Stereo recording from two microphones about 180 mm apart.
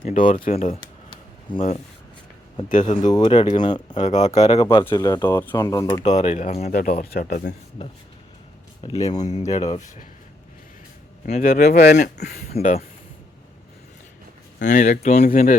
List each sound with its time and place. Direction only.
0.0 s speech: 50° left (ahead or behind)
0.5 s a sound: 35° left (ahead or behind)
1.5 s speech: 25° left (ahead or behind)
2.6 s speech: 45° left (ahead or behind)
2.9 s speech: 25° left (ahead or behind)
4.0 s speech: 40° left (ahead or behind)
4.5 s speech: 25° left (ahead or behind)
6.1 s speech: 35° left (ahead or behind)
6.7 s speech: 55° left (ahead or behind)
7.8 s speech: 30° left (ahead or behind)
9.1 s speech: 40° left (ahead or behind)
11.4 s speech: 55° left (ahead or behind)
12.5 s speech: 35° left (ahead or behind)
14.6 s speech: 45° left (ahead or behind)